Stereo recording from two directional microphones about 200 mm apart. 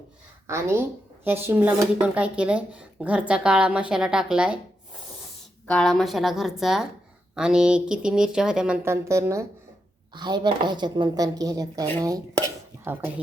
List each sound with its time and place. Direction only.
0.4 s speech: 15° right (ahead or behind)
5.6 s a woman's voice: 5° left (ahead or behind)